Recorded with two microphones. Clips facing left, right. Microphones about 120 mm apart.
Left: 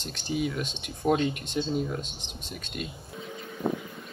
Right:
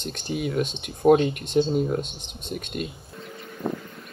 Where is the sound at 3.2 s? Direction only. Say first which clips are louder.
Even; 5° left (ahead or behind).